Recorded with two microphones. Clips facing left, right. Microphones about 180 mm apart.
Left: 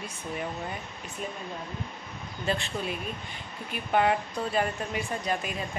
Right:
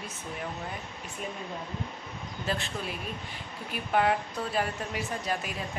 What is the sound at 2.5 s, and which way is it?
Speech, centre (ahead or behind).